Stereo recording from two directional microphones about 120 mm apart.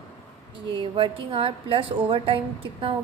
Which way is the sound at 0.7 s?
45° right (ahead or behind).